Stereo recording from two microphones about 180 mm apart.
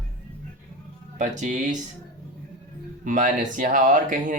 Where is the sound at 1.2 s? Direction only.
45° right (ahead or behind).